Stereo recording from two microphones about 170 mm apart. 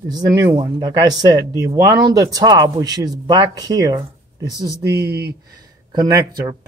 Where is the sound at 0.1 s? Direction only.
20° right (ahead or behind).